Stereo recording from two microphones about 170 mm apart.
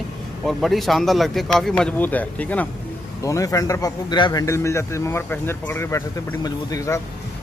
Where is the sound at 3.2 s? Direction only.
20° left (ahead or behind).